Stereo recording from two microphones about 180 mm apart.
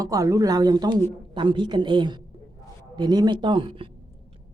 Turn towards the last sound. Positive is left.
turn(degrees=-30)  # may be behind; listen again after turning